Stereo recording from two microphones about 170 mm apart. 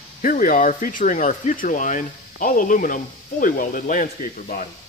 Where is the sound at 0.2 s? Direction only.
55° left (ahead or behind).